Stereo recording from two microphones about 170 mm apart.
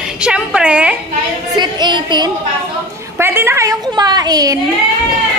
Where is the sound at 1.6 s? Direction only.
25° right (ahead or behind).